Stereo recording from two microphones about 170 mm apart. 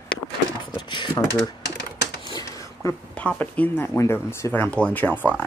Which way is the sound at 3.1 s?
5° left (ahead or behind).